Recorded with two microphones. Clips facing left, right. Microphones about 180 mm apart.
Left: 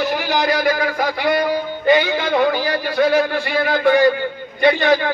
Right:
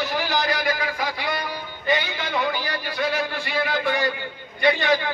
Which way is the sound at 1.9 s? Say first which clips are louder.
Left 9 dB; 65° left (ahead or behind).